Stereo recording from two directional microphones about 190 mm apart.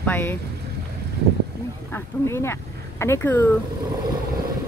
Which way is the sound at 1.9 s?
15° left (ahead or behind).